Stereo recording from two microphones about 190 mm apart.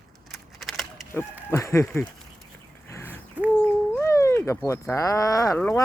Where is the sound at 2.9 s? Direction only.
10° left (ahead or behind).